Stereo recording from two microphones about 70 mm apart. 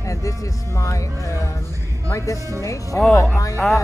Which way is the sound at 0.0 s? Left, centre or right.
Left.